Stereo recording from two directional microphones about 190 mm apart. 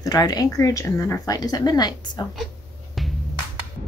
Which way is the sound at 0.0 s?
20° left (ahead or behind).